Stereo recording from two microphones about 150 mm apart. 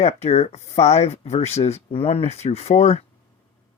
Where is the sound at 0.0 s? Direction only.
45° left (ahead or behind).